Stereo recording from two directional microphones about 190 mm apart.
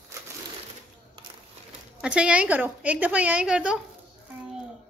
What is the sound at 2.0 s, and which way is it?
A woman's voice, 5° right (ahead or behind).